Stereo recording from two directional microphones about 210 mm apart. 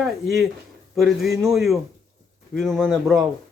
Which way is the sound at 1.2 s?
Centre (ahead or behind).